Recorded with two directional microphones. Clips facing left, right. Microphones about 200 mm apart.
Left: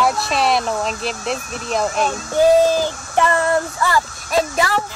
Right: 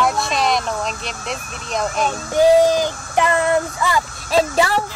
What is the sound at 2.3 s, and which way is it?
Child singing, 15° right (ahead or behind).